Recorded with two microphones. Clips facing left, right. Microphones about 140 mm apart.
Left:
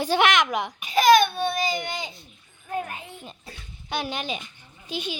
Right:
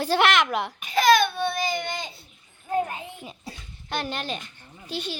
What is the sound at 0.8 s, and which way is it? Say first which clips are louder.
Baby cry: left 2 dB; 15° left (ahead or behind).